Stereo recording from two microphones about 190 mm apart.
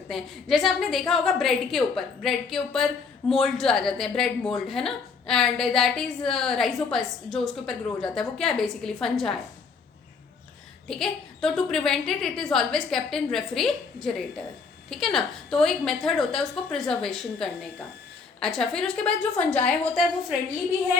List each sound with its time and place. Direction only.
0.1 s a woman's voice: centre (ahead or behind)
10.8 s a woman's voice: centre (ahead or behind)